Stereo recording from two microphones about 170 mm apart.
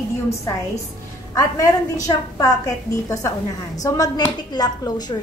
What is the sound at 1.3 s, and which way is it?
A woman's voice, 20° left (ahead or behind).